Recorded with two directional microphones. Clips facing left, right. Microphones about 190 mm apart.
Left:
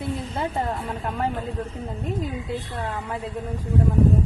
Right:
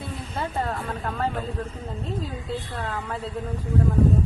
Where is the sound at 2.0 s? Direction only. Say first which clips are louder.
Left 3 dB; 15° left (ahead or behind).